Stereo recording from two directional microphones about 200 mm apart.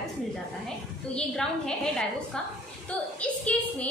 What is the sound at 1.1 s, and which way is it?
A woman's voice, 5° left (ahead or behind).